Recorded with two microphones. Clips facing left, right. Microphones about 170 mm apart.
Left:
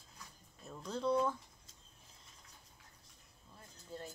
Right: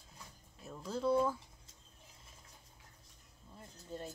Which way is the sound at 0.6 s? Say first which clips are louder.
Right 2 dB; 5° right (ahead or behind).